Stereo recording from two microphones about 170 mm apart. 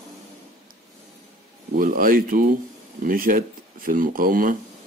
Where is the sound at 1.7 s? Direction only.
55° right (ahead or behind).